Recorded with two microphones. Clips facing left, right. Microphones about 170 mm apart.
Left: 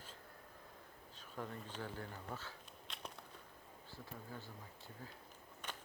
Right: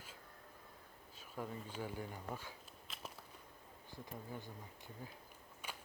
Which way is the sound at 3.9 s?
15° right (ahead or behind).